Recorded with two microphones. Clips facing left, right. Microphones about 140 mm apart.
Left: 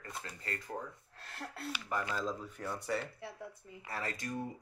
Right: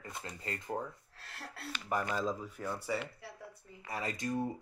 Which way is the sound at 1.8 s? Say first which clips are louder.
Right 3 dB; 15° right (ahead or behind).